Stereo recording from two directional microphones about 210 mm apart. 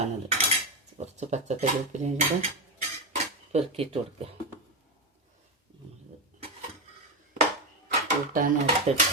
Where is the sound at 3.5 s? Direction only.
30° right (ahead or behind).